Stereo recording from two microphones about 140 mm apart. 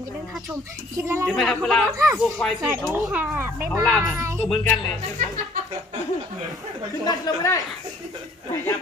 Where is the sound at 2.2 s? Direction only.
Centre (ahead or behind).